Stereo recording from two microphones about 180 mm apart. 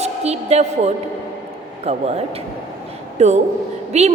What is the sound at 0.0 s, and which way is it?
A woman's voice, 35° right (ahead or behind).